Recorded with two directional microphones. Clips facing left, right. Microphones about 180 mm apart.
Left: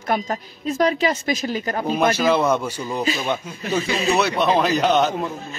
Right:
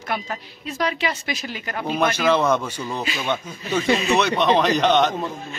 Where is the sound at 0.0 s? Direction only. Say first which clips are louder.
Left 5 dB; 45° left (ahead or behind).